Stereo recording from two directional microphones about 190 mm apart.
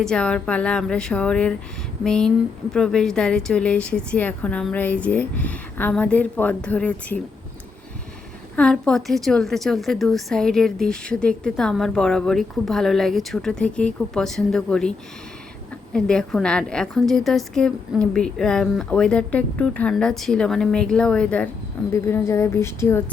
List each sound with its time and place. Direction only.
0.0 s a woman's voice: 5° left (ahead or behind)
8.5 s a woman's voice: 5° left (ahead or behind)